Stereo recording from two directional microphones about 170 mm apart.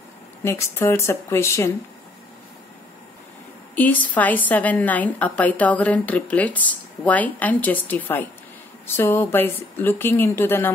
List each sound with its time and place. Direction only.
0.4 s a woman's voice: 15° left (ahead or behind)
3.7 s a woman's voice: 10° left (ahead or behind)